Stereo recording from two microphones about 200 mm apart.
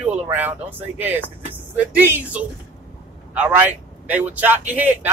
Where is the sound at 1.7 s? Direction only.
10° right (ahead or behind).